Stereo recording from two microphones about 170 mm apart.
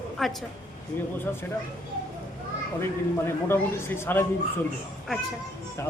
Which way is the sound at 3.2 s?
15° left (ahead or behind).